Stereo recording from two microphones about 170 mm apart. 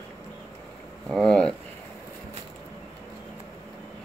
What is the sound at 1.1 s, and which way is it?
Speech, 5° left (ahead or behind).